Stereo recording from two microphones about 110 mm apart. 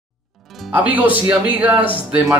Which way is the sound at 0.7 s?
15° right (ahead or behind).